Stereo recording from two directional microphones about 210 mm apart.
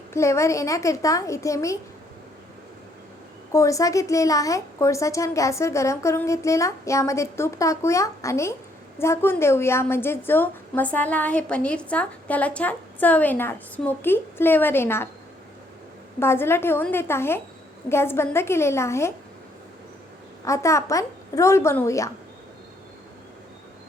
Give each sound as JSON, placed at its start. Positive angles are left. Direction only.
{"t": 0.1, "sound": "a woman's voice", "side_deg": 15}
{"t": 3.5, "sound": "a woman's voice", "side_deg": 15}
{"t": 16.2, "sound": "a woman's voice", "side_deg": 10}
{"t": 20.4, "sound": "a woman's voice", "side_deg": 15}